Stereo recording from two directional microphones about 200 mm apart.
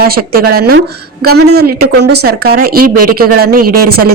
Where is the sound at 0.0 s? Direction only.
50° right (ahead or behind).